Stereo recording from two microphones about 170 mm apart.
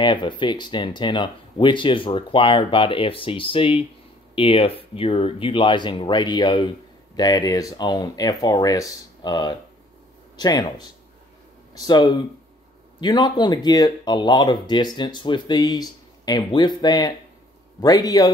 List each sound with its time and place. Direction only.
0.0 s speech: 30° left (ahead or behind)
11.7 s speech: 25° left (ahead or behind)